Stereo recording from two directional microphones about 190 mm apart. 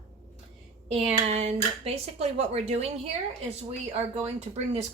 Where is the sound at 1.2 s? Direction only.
35° right (ahead or behind).